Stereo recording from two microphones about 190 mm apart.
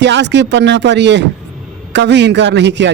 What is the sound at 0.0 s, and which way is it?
Speech, 65° right (ahead or behind).